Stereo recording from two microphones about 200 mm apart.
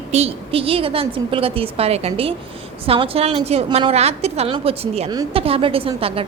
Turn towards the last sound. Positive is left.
turn(degrees=-30)  # may be behind; listen again after turning